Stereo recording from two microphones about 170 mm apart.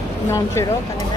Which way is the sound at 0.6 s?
15° left (ahead or behind).